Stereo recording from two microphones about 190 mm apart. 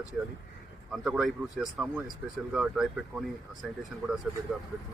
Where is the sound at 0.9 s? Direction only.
Centre (ahead or behind).